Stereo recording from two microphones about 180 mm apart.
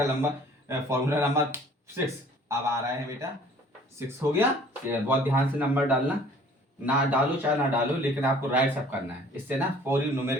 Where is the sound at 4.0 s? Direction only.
10° right (ahead or behind).